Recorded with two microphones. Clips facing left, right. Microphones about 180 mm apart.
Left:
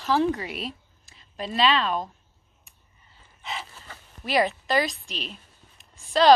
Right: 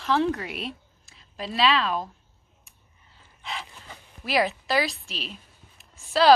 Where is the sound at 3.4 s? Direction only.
Centre (ahead or behind).